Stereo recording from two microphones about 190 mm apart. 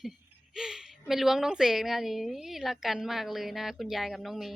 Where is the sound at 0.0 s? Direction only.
5° right (ahead or behind).